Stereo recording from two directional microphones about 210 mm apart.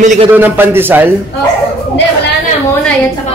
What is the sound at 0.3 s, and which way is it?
Speech, 10° right (ahead or behind).